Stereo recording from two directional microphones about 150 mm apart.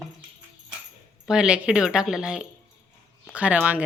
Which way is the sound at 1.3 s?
5° right (ahead or behind).